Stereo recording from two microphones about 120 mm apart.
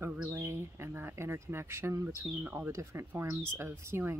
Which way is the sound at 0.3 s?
20° right (ahead or behind).